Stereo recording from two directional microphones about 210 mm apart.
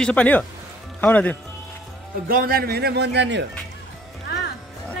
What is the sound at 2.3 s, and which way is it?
A man's voice, 45° right (ahead or behind).